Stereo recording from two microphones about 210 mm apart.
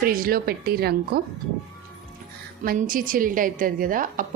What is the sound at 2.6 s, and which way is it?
A woman's voice, 45° right (ahead or behind).